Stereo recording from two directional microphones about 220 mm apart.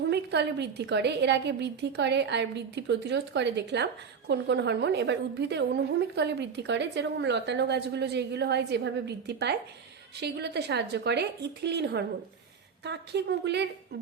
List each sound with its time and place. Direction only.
0.1 s a woman's voice: 50° right (ahead or behind)